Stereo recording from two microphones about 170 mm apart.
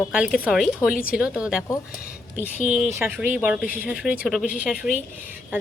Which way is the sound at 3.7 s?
55° left (ahead or behind).